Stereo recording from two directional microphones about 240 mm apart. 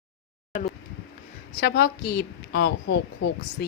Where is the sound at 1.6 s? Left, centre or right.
Left.